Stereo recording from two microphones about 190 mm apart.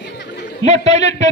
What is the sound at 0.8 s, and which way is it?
Speech, 35° right (ahead or behind).